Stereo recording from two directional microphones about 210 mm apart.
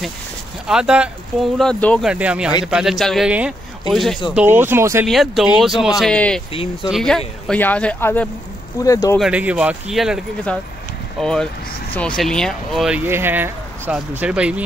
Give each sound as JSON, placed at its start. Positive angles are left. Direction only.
{"t": 0.7, "sound": "speech", "side_deg": -5}
{"t": 2.0, "sound": "speech", "side_deg": -5}
{"t": 5.0, "sound": "speech", "side_deg": 0}
{"t": 6.5, "sound": "speech", "side_deg": 25}
{"t": 6.9, "sound": "speech", "side_deg": 0}
{"t": 9.2, "sound": "speech", "side_deg": -5}